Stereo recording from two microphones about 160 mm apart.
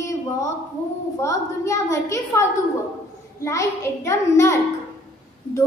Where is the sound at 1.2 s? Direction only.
20° left (ahead or behind).